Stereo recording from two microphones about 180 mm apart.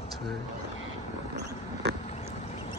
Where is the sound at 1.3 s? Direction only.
70° right (ahead or behind).